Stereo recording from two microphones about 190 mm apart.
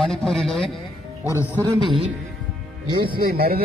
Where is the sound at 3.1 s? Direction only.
55° right (ahead or behind).